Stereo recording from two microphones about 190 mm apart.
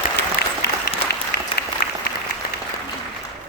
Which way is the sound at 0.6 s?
60° left (ahead or behind).